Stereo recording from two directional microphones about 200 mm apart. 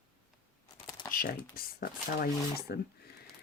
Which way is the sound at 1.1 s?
45° left (ahead or behind).